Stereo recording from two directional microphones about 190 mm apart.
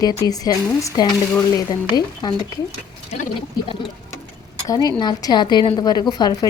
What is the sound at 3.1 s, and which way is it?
Speech, 35° left (ahead or behind).